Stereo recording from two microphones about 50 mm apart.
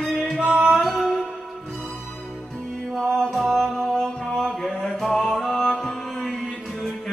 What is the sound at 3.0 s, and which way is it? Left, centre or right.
Music, centre.